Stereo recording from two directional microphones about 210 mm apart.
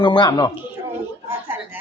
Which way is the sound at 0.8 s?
10° right (ahead or behind).